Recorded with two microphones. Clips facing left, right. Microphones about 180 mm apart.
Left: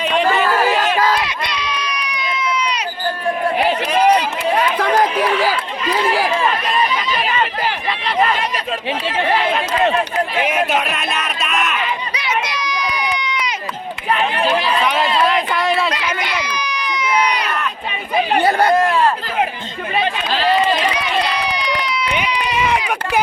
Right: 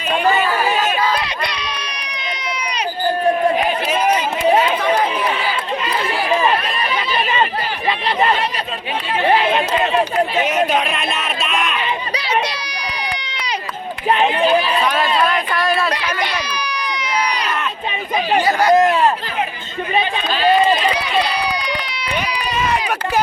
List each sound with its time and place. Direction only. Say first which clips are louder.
1.5 s run: left 4 dB; 35° right (ahead or behind)
7.1 s chatter: right 1 dB; 25° right (ahead or behind)
8.9 s speech: left 1 dB; 90° left
9.5 s speech: even; 25° right (ahead or behind)
10.4 s speech: right 1 dB; 10° left (ahead or behind)
12.1 s a sound: right 2 dB; 30° right (ahead or behind)
14.1 s speech: right 3 dB; 30° right (ahead or behind)
14.9 s a sound: left 1 dB; 20° left (ahead or behind)
15.9 s speech: right 1 dB; 30° right (ahead or behind)
18.3 s speech: left 1 dB; 55° left (ahead or behind)
18.7 s speech: right 2 dB; 20° right (ahead or behind)